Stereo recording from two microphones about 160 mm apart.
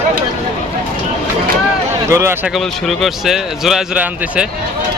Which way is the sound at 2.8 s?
Centre (ahead or behind).